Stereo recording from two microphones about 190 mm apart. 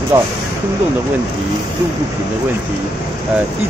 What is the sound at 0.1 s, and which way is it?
Speech, 15° right (ahead or behind).